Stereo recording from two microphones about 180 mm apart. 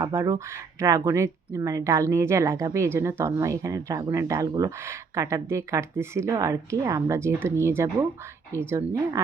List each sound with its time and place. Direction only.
0.0 s speech: 15° right (ahead or behind)